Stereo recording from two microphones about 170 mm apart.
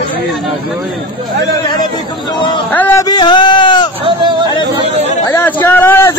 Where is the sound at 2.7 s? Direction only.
15° left (ahead or behind).